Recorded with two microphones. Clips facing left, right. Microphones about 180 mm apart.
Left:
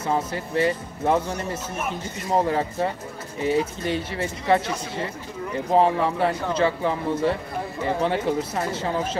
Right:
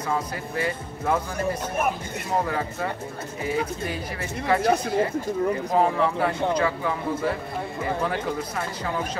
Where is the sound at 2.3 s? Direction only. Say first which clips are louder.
Left 4 dB; 30° left (ahead or behind).